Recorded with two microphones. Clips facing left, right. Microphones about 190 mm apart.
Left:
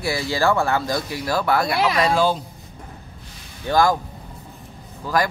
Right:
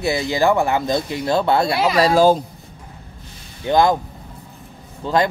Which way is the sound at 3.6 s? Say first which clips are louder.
Right 3 dB; 20° right (ahead or behind).